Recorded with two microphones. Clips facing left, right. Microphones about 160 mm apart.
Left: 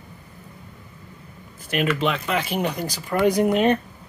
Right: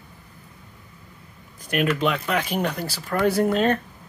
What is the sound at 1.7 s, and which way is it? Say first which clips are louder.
Speech: even; centre (ahead or behind).